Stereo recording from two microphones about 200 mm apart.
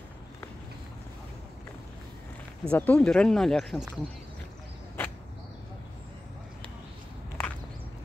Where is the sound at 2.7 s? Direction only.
5° left (ahead or behind).